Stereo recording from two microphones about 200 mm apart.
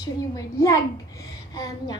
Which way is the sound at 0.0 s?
15° left (ahead or behind).